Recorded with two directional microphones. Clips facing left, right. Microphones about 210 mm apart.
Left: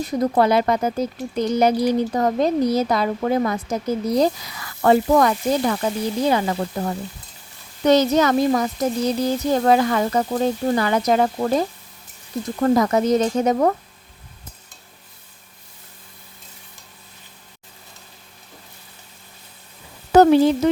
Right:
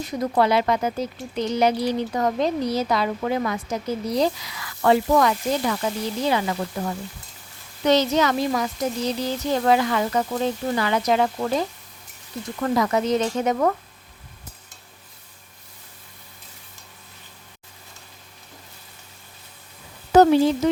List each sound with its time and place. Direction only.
0.2 s speech: 40° left (ahead or behind)